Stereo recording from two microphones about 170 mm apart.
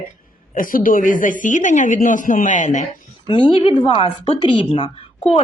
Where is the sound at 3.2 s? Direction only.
30° left (ahead or behind).